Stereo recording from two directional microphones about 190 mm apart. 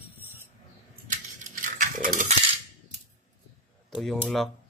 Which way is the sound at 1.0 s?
45° right (ahead or behind).